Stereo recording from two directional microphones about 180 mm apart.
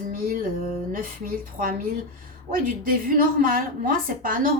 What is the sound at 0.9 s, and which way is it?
A woman's voice, 50° right (ahead or behind).